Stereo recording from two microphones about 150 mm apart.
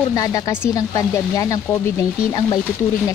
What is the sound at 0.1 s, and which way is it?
Speech, 25° left (ahead or behind).